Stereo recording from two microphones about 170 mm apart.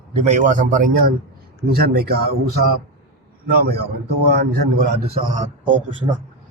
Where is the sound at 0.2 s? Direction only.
45° right (ahead or behind).